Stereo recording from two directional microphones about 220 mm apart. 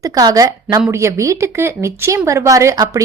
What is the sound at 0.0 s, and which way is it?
A woman's voice, 15° right (ahead or behind).